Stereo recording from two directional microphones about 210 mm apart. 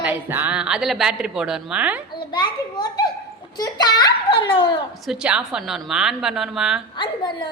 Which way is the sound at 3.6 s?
20° left (ahead or behind).